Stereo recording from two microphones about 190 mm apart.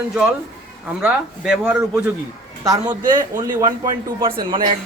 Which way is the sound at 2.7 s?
20° right (ahead or behind).